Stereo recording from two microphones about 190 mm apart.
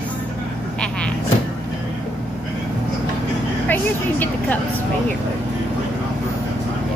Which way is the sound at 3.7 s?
10° left (ahead or behind).